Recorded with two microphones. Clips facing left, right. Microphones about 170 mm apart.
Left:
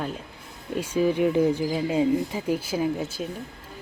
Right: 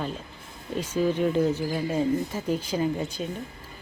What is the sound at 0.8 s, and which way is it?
A woman's voice, 10° left (ahead or behind).